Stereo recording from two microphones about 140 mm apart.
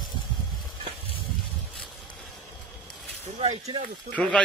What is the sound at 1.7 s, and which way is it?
Insect, centre (ahead or behind).